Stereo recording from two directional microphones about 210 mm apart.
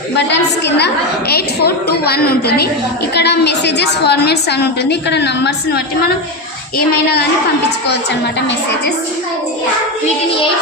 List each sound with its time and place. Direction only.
1.3 s a woman's voice: 50° left (ahead or behind)